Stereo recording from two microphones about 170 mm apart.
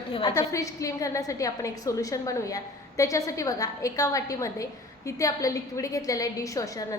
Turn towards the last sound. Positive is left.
turn(degrees=20)  # may be behind; listen again after turning